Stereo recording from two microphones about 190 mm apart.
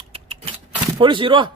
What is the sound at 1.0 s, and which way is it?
Speech, 25° right (ahead or behind).